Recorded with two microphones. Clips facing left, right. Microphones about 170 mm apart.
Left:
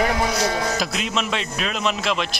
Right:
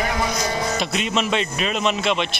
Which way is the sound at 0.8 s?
Centre (ahead or behind).